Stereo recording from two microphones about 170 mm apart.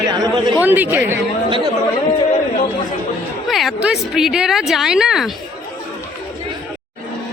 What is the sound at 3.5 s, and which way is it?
A woman's voice, centre (ahead or behind).